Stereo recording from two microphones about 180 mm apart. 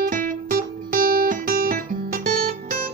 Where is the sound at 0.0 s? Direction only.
50° right (ahead or behind).